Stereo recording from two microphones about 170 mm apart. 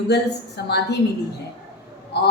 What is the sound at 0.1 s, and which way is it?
Speech, 80° left.